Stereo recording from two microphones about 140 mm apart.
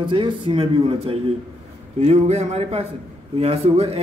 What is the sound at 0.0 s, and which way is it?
A man's voice, 35° right (ahead or behind).